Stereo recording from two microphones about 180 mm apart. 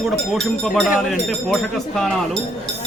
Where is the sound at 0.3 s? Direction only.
Centre (ahead or behind).